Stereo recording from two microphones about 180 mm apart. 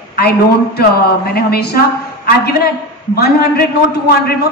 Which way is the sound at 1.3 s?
60° left (ahead or behind).